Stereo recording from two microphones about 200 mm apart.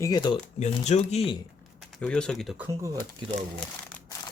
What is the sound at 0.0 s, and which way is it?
Speech, 20° left (ahead or behind).